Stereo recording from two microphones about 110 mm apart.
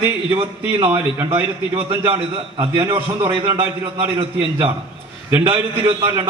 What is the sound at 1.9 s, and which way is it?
A man's voice, 55° right (ahead or behind).